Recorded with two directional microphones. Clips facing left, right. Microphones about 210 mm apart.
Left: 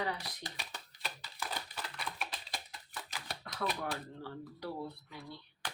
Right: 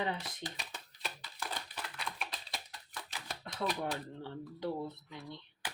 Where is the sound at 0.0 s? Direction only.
25° right (ahead or behind).